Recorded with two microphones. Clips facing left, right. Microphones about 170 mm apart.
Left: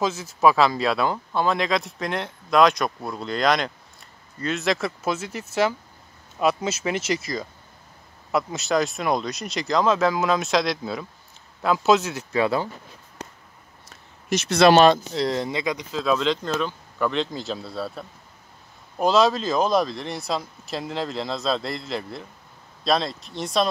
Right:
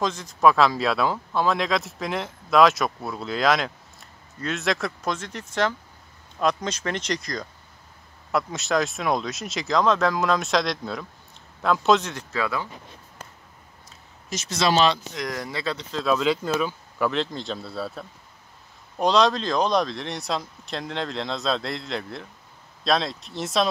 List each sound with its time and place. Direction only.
0.0 s speech: 5° left (ahead or behind)
12.4 s speech: 30° left (ahead or behind)
14.3 s speech: 65° left (ahead or behind)
15.1 s speech: 25° left (ahead or behind)
16.0 s speech: centre (ahead or behind)